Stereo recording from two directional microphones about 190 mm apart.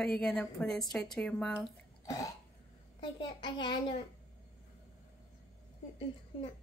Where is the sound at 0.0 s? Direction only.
5° left (ahead or behind).